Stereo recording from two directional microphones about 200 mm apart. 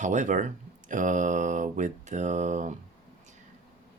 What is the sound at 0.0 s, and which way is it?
Speech, 40° right (ahead or behind).